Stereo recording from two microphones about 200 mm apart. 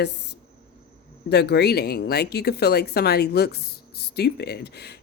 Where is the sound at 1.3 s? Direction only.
55° left (ahead or behind).